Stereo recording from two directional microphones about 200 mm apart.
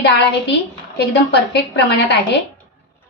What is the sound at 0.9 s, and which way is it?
Speech, 55° left (ahead or behind).